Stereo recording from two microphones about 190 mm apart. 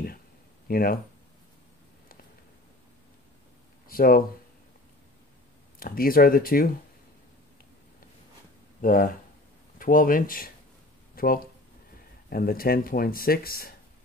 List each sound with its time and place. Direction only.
0.7 s speech: 50° left (ahead or behind)
3.9 s speech: 50° left (ahead or behind)
5.8 s speech: 50° left (ahead or behind)
8.8 s speech: 45° left (ahead or behind)